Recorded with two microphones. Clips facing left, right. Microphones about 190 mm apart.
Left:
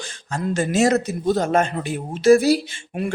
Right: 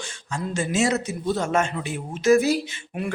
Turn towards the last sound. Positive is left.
turn(degrees=35)  # may be behind; listen again after turning